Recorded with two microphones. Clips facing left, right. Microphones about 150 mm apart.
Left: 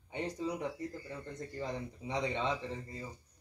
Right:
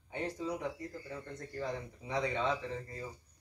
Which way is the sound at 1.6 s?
20° left (ahead or behind).